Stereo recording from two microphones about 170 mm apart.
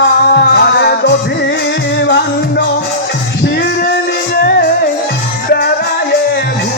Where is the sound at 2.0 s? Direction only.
85° left.